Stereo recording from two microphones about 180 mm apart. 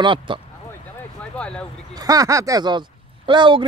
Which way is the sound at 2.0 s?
20° right (ahead or behind).